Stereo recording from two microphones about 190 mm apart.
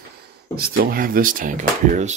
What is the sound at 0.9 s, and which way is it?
Speech, 50° right (ahead or behind).